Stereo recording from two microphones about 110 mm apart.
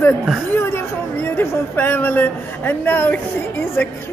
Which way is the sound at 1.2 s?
20° left (ahead or behind).